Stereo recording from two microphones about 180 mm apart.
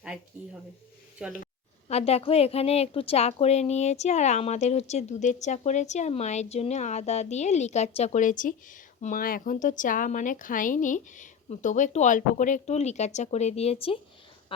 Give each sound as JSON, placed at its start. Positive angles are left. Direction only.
{"t": 1.2, "sound": "speech", "side_deg": -5}
{"t": 1.9, "sound": "a woman's voice", "side_deg": 35}